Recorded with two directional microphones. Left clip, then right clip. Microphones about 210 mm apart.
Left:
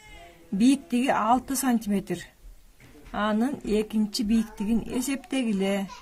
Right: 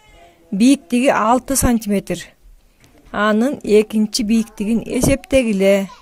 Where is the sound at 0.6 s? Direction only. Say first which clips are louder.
Right 9 dB; 40° right (ahead or behind).